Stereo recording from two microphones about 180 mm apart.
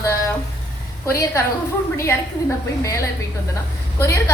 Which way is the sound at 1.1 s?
15° left (ahead or behind).